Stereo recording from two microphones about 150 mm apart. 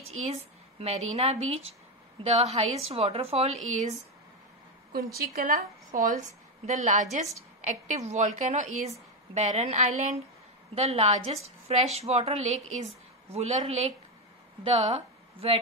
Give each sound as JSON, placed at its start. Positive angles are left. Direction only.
{"t": 0.2, "sound": "a woman's voice", "side_deg": -45}
{"t": 4.9, "sound": "a woman's voice", "side_deg": -85}